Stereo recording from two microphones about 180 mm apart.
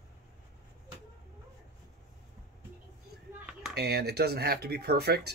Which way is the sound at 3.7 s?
65° right (ahead or behind).